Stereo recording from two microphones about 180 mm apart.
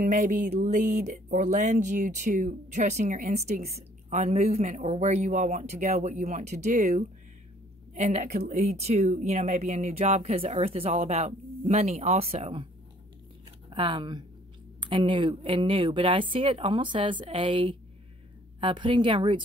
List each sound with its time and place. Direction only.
0.0 s a woman's voice: 50° right (ahead or behind)
13.7 s a woman's voice: 30° right (ahead or behind)